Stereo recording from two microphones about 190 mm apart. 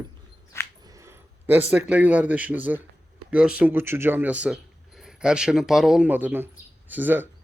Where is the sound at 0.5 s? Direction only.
15° left (ahead or behind).